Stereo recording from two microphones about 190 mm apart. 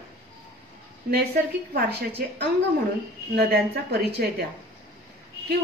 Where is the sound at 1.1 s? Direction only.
55° right (ahead or behind).